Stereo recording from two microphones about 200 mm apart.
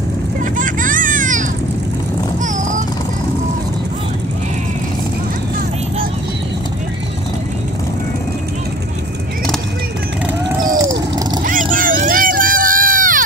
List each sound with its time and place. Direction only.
0.4 s vehicle: 40° right (ahead or behind)
11.7 s crowd: 45° right (ahead or behind)